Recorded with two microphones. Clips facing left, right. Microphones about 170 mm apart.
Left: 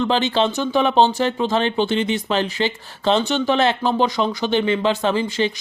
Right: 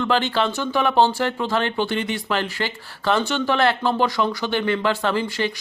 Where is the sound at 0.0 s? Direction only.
20° left (ahead or behind).